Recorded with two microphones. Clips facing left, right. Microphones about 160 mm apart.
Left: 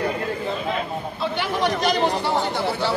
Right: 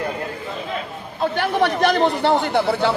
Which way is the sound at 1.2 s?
50° right (ahead or behind).